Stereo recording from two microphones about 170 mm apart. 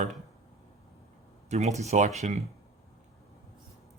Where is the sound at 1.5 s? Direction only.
40° right (ahead or behind).